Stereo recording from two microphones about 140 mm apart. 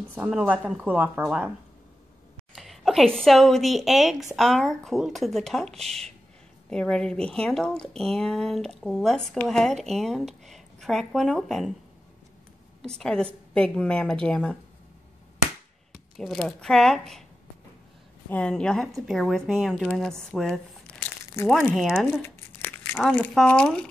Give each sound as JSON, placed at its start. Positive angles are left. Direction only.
{"t": 0.1, "sound": "a woman's voice", "side_deg": -5}
{"t": 2.5, "sound": "a woman's voice", "side_deg": 0}
{"t": 12.9, "sound": "a woman's voice", "side_deg": 5}
{"t": 15.9, "sound": "speech", "side_deg": 0}
{"t": 18.3, "sound": "speech", "side_deg": 5}
{"t": 21.4, "sound": "speech", "side_deg": 20}
{"t": 21.7, "sound": "speech", "side_deg": -5}
{"t": 22.2, "sound": "crumpling", "side_deg": 15}
{"t": 23.3, "sound": "a woman's voice", "side_deg": 5}